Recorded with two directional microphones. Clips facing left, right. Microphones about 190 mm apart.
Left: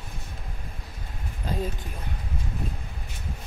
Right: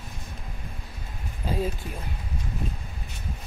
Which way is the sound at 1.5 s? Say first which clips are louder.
Right 2 dB; 5° right (ahead or behind).